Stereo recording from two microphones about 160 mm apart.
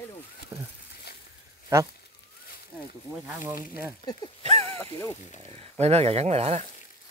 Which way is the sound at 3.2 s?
15° right (ahead or behind).